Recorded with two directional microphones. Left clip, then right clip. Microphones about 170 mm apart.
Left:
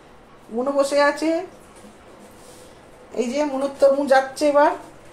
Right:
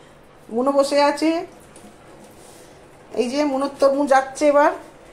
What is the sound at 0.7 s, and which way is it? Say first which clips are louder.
Speech: even; 25° right (ahead or behind).